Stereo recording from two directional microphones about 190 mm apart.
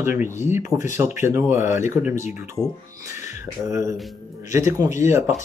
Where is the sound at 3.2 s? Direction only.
15° right (ahead or behind).